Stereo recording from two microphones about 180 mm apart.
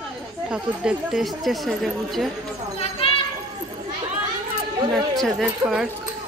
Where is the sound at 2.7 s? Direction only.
35° left (ahead or behind).